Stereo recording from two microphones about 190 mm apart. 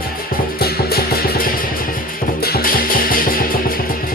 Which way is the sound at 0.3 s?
55° left (ahead or behind).